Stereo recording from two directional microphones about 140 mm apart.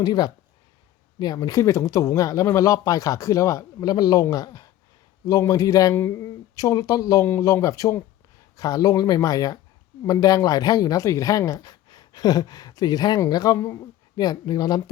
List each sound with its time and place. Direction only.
0.0 s a woman's voice: 30° left (ahead or behind)